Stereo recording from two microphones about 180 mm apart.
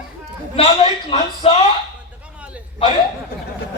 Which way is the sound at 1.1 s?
30° left (ahead or behind).